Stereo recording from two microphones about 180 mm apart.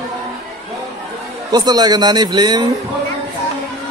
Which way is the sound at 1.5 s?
20° right (ahead or behind).